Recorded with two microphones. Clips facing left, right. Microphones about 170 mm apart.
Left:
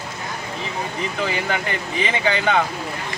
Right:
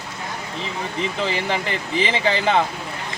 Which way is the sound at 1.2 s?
30° right (ahead or behind).